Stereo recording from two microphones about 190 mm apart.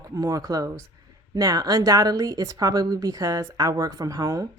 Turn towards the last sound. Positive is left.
turn(degrees=-15)  # may be behind; listen again after turning